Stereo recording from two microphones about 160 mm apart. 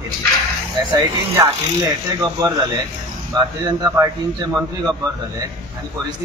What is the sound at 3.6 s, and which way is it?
Speech, 20° right (ahead or behind).